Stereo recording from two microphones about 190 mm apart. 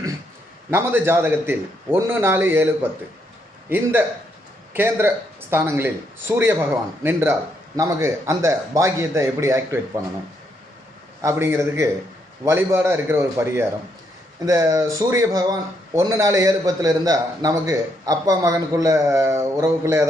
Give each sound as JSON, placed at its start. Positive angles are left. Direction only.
{"t": 0.7, "sound": "speech", "side_deg": -15}
{"t": 11.2, "sound": "speech", "side_deg": -15}